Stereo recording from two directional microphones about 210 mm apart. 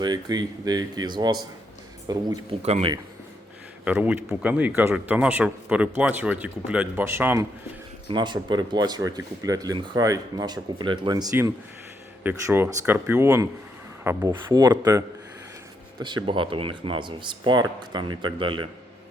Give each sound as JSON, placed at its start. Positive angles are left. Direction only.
{"t": 0.0, "sound": "speech", "side_deg": -20}
{"t": 2.6, "sound": "speech", "side_deg": -30}
{"t": 3.8, "sound": "speech", "side_deg": -10}
{"t": 8.0, "sound": "speech", "side_deg": -20}